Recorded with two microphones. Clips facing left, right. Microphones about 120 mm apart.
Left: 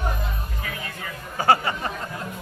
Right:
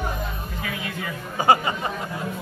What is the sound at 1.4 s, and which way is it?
Speech, 15° right (ahead or behind).